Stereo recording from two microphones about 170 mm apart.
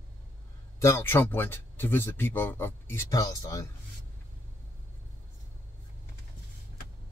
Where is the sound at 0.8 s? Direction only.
15° left (ahead or behind).